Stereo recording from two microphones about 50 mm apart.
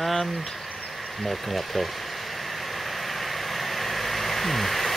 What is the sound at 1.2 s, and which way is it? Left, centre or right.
Vehicle, centre.